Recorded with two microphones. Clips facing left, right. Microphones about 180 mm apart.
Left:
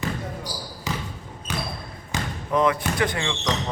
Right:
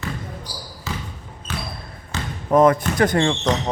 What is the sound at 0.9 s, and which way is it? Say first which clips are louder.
Basketball bounce: even; 15° left (ahead or behind).